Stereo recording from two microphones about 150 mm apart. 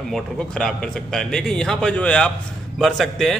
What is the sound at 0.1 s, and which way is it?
A man's voice, 5° left (ahead or behind).